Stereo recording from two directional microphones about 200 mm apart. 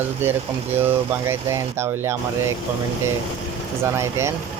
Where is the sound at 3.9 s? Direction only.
15° right (ahead or behind).